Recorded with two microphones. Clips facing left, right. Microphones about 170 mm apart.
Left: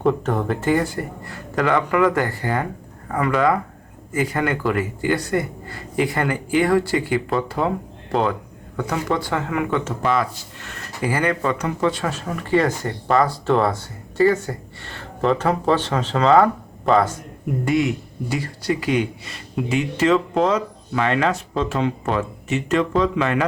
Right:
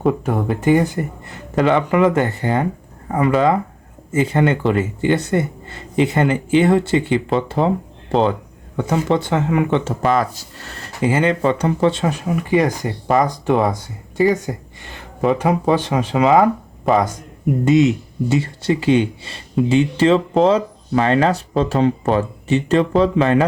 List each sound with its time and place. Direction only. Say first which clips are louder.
0.0 s speech: right 2 dB; 10° right (ahead or behind); by 9.9 s 25° right (ahead or behind)
10.0 s speech: right 3 dB; 40° right (ahead or behind)
11.0 s speech: right 5 dB; 25° right (ahead or behind)
17.7 s speech: right 6 dB; 20° right (ahead or behind)